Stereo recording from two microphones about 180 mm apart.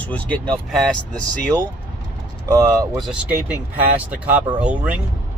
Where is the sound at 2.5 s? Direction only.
20° right (ahead or behind).